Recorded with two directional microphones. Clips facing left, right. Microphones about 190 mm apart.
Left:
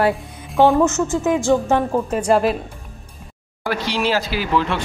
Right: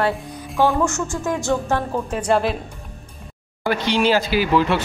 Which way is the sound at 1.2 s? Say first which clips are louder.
Left 4 dB; 15° left (ahead or behind).